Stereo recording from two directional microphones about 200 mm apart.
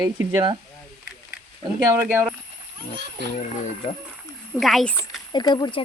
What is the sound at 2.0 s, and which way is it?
Speech, 5° right (ahead or behind).